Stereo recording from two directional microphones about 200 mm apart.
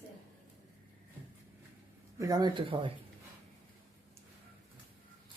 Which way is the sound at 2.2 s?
20° right (ahead or behind).